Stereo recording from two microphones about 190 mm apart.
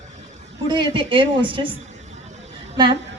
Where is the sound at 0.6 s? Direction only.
25° right (ahead or behind).